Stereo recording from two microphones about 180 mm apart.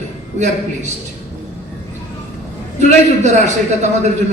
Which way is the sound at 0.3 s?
40° right (ahead or behind).